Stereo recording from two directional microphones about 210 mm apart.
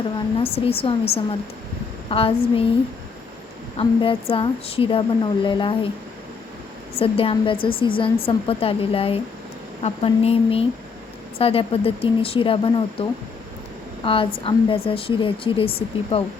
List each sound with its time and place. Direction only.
0.3 s a woman's voice: 25° left (ahead or behind)
3.8 s a woman's voice: 25° left (ahead or behind)
7.0 s a woman's voice: 25° left (ahead or behind)